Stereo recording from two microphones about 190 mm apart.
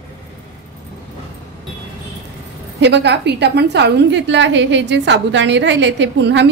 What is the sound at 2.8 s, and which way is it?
A woman's voice, 65° right (ahead or behind).